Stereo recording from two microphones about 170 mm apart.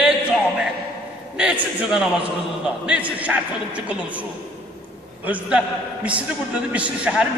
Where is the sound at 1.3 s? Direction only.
5° right (ahead or behind).